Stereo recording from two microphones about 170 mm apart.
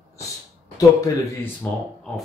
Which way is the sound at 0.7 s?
20° left (ahead or behind).